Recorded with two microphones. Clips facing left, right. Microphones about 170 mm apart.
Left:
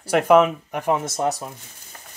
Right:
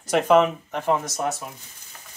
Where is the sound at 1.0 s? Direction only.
30° left (ahead or behind).